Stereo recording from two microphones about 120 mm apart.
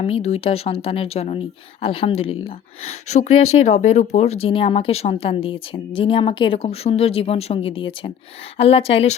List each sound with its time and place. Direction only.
0.0 s speech: 60° left (ahead or behind)
1.8 s speech: 50° left (ahead or behind)
3.1 s speech: 70° left (ahead or behind); by 9.1 s 55° left (ahead or behind)